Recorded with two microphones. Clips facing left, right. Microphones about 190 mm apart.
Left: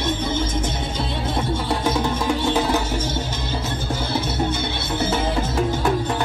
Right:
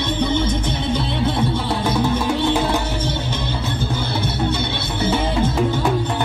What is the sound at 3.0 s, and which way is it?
Music, 60° right (ahead or behind).